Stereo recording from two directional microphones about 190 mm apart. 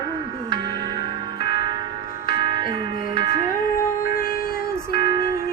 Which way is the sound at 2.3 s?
25° right (ahead or behind).